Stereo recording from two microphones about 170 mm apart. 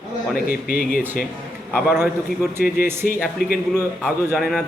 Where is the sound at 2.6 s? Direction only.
65° left (ahead or behind).